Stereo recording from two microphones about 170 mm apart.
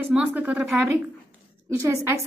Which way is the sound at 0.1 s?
10° right (ahead or behind).